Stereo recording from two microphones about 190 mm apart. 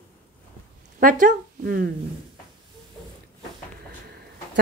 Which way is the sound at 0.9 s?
45° right (ahead or behind).